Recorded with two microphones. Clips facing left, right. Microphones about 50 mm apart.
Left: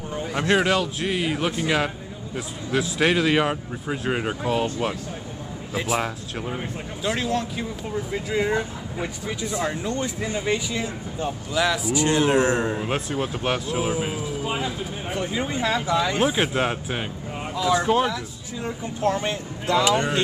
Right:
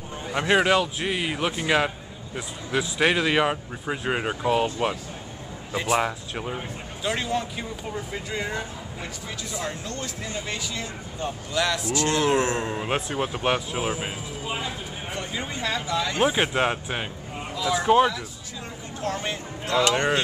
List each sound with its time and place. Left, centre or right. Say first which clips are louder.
0.3 s speech: right 1 dB; centre
5.7 s speech: right 1 dB; centre
11.9 s speech: left 2 dB; centre
12.8 s speech: left 1 dB; centre
14.6 s speech: left 4 dB; centre
16.2 s speech: even; centre
17.8 s speech: right 2 dB; centre
19.0 s speech: left 6 dB; centre
19.7 s speech: left 2 dB; centre